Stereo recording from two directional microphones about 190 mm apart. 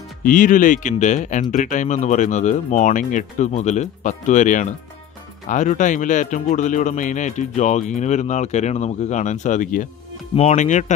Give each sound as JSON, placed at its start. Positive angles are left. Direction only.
{"t": 0.2, "sound": "speech", "side_deg": 45}